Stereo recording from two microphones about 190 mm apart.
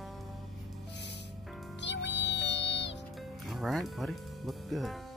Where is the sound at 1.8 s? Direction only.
65° left (ahead or behind).